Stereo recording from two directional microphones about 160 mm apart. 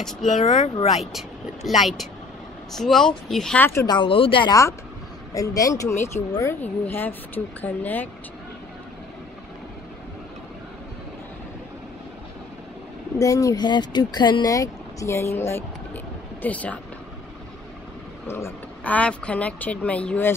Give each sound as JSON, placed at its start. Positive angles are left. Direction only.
{"t": 0.2, "sound": "speech", "side_deg": 45}
{"t": 1.1, "sound": "speech", "side_deg": 0}
{"t": 3.6, "sound": "speech", "side_deg": 15}
{"t": 3.9, "sound": "speech", "side_deg": 30}
{"t": 5.3, "sound": "speech", "side_deg": 20}
{"t": 13.2, "sound": "speech", "side_deg": 20}
{"t": 18.2, "sound": "speech", "side_deg": 15}